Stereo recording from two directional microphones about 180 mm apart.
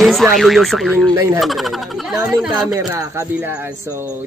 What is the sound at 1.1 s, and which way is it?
Speech, 15° right (ahead or behind).